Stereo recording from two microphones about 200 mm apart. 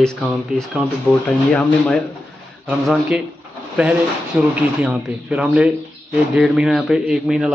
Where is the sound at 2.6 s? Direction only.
5° right (ahead or behind).